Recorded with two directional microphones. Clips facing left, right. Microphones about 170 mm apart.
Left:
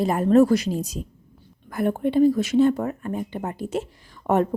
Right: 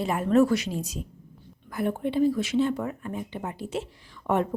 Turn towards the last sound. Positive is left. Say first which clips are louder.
# left 4 dB
turn(degrees=45)  # may be behind; listen again after turning